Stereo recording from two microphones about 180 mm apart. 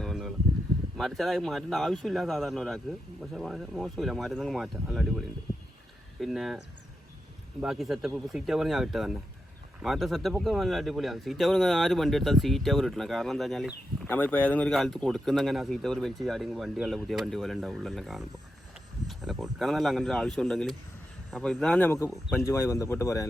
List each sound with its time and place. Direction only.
0.0 s a sound: centre (ahead or behind)
0.9 s speech: centre (ahead or behind)
7.6 s a man's voice: centre (ahead or behind); by 23.2 s 15° left (ahead or behind)